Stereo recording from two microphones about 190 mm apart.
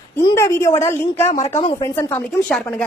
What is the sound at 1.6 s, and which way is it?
A woman's voice, 15° left (ahead or behind).